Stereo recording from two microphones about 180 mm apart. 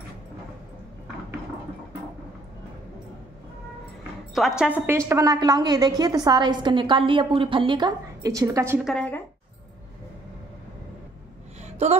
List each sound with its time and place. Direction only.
4.3 s a woman's voice: centre (ahead or behind); by 8.7 s 20° right (ahead or behind)
8.7 s speech: centre (ahead or behind)
11.6 s a sound: 40° right (ahead or behind)